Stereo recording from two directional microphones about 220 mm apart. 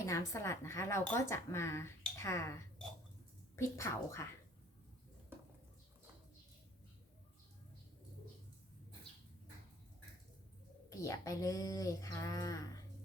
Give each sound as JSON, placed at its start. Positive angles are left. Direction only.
{"t": 0.0, "sound": "speech", "side_deg": 15}
{"t": 10.8, "sound": "speech", "side_deg": 15}